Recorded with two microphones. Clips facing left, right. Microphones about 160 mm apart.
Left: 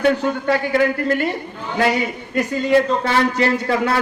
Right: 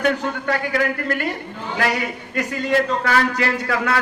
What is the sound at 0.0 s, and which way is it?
A man's voice, 30° left (ahead or behind).